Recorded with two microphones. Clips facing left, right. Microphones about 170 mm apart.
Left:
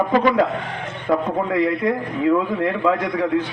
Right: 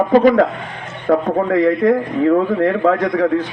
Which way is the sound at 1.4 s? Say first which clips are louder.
Right 5 dB; 45° right (ahead or behind).